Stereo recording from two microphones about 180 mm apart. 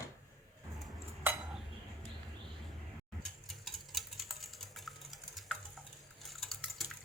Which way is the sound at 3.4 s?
Centre (ahead or behind).